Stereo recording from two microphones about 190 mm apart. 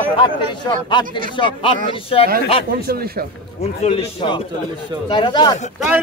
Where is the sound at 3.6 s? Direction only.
30° left (ahead or behind).